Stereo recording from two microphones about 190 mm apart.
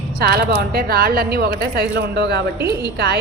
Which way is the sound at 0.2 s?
55° right (ahead or behind).